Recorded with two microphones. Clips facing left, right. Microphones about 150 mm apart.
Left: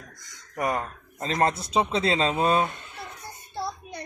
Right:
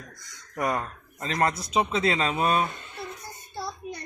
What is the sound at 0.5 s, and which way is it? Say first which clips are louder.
Speech: even; 15° left (ahead or behind).